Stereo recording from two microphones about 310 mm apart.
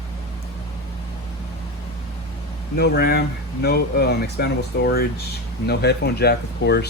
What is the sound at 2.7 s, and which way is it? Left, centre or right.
Speech, left.